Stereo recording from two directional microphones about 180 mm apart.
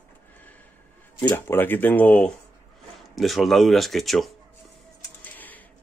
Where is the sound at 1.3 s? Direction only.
10° left (ahead or behind).